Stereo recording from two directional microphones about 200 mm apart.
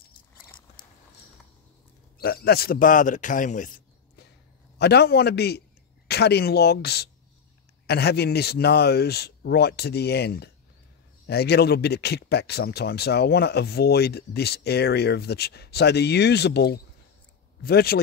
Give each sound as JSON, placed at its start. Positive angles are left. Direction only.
{"t": 2.1, "sound": "a man's voice", "side_deg": 50}
{"t": 4.7, "sound": "speech", "side_deg": 55}